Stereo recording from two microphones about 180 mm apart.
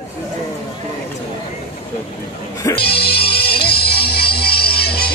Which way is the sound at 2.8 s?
60° left (ahead or behind).